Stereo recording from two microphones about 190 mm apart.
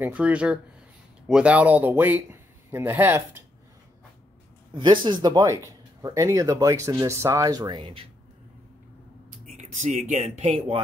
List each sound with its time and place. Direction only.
0.0 s a man's voice: 5° right (ahead or behind)
4.7 s speech: 25° right (ahead or behind)
9.3 s speech: 40° right (ahead or behind)